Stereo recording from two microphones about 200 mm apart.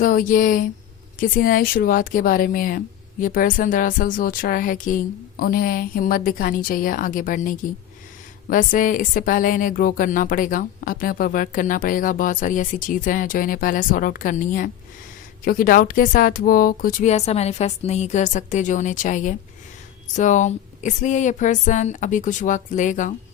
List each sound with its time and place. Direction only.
0.0 s speech: 45° left (ahead or behind)